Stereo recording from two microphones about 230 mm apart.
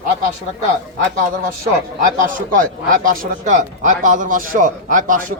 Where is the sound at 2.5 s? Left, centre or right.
Right.